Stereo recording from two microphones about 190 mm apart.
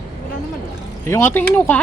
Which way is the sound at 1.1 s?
10° left (ahead or behind).